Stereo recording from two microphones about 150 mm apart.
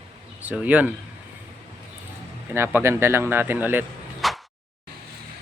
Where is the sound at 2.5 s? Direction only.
15° right (ahead or behind).